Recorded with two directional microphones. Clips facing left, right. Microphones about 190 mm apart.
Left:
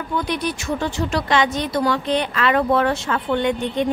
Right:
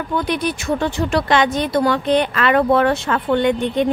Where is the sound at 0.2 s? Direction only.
55° right (ahead or behind).